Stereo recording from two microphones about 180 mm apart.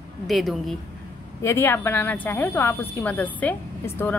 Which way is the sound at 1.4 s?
15° left (ahead or behind).